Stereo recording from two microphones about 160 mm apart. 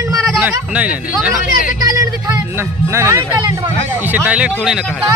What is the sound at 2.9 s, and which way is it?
A man's voice, 15° right (ahead or behind).